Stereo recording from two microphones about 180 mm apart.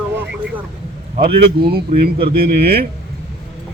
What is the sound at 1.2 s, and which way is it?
Speech, 55° right (ahead or behind).